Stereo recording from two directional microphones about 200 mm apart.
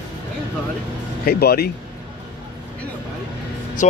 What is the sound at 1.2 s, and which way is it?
Speech, 50° left (ahead or behind).